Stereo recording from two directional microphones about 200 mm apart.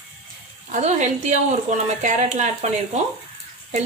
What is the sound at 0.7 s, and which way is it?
A woman's voice, 35° right (ahead or behind).